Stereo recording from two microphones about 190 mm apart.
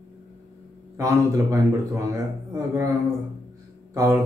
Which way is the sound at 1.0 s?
15° right (ahead or behind).